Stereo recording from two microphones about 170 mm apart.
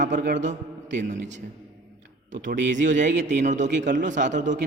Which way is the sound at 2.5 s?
90° right.